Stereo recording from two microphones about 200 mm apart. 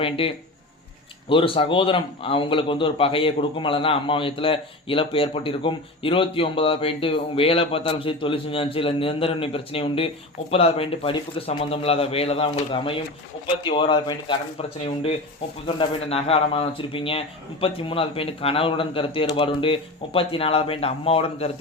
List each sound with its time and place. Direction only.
0.0 s a man's voice: 30° left (ahead or behind)
15.6 s a man's voice: 30° left (ahead or behind)